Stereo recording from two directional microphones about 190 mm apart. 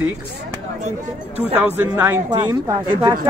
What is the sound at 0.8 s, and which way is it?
Speech, 35° right (ahead or behind).